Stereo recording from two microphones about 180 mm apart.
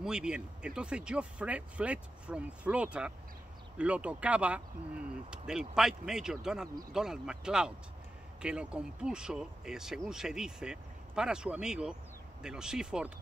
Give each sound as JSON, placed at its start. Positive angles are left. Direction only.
{"t": 0.0, "sound": "speech", "side_deg": -5}